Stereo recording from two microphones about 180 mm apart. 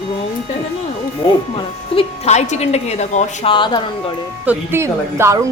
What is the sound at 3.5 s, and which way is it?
Speech, 25° left (ahead or behind).